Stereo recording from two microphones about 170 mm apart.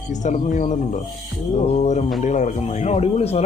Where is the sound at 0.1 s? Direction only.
45° left (ahead or behind).